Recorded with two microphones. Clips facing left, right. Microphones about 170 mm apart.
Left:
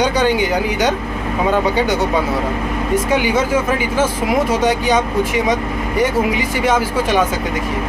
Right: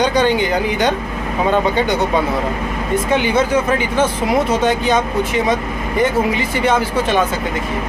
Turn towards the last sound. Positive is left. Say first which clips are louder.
# even
turn(degrees=10)  # may be behind; listen again after turning